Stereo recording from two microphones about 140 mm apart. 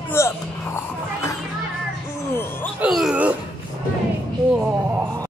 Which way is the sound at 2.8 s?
5° right (ahead or behind).